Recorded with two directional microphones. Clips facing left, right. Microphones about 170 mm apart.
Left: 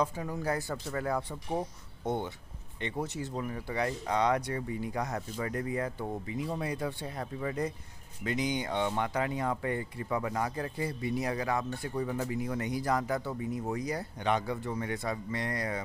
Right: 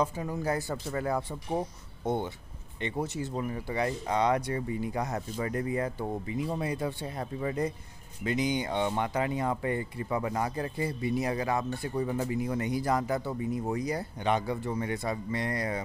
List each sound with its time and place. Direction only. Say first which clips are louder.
0.0 s speech: right 2 dB; 20° right (ahead or behind)
3.3 s speech: right 2 dB; 20° right (ahead or behind)